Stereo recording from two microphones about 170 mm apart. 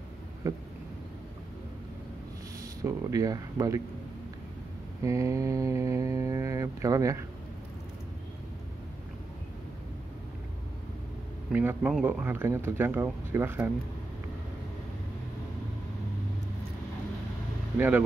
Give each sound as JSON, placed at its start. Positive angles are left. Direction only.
{"t": 0.4, "sound": "speech", "side_deg": -20}
{"t": 2.8, "sound": "speech", "side_deg": -20}
{"t": 5.0, "sound": "speech", "side_deg": -20}
{"t": 11.5, "sound": "speech", "side_deg": -10}
{"t": 17.7, "sound": "speech", "side_deg": -10}